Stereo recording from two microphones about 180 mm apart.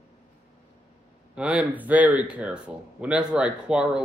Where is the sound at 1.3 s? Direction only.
5° right (ahead or behind).